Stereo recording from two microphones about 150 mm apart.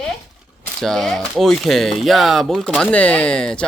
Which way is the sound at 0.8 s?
5° left (ahead or behind).